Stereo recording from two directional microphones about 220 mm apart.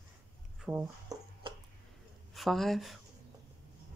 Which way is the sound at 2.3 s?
Centre (ahead or behind).